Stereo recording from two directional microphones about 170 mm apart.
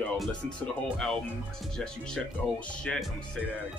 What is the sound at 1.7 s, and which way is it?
Speech, 5° left (ahead or behind).